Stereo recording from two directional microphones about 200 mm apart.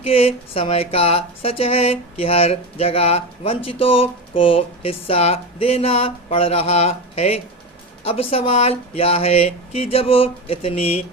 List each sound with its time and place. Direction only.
0.0 s speech: 30° left (ahead or behind)